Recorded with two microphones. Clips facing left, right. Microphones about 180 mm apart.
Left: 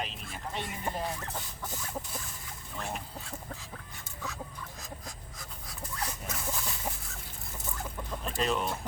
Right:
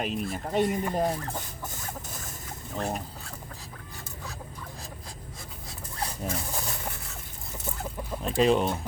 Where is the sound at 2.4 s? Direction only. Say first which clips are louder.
Right 10 dB; 40° right (ahead or behind).